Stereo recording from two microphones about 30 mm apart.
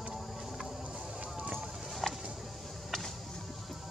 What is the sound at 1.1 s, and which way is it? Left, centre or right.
Run, right.